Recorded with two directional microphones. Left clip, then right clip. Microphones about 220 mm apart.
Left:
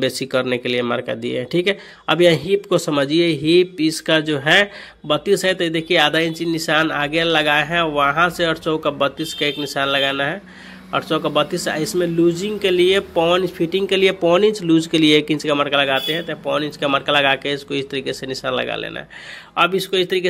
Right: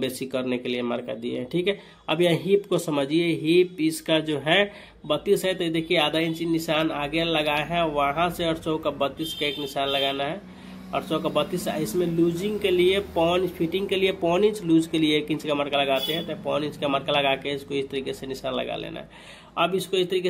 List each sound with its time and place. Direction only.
0.0 s speech: 20° left (ahead or behind)